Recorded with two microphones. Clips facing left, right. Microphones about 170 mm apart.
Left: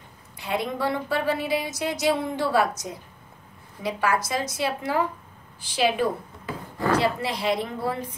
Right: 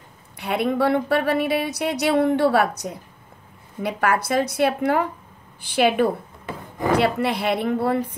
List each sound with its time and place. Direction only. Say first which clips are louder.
0.4 s speech: right 6 dB; 65° right (ahead or behind)
6.4 s a sound: right 2 dB; 20° right (ahead or behind)
7.0 s speech: right 4 dB; 60° right (ahead or behind)